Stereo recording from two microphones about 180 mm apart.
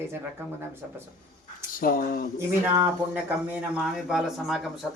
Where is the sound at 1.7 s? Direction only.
50° left (ahead or behind).